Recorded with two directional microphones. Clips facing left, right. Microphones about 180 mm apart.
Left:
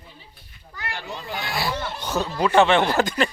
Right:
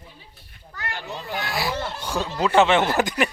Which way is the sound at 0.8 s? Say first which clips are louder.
Even; centre (ahead or behind).